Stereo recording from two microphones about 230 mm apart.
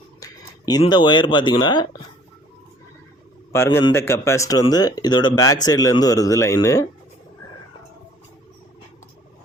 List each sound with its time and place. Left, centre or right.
0.2 s speech: centre
3.5 s speech: centre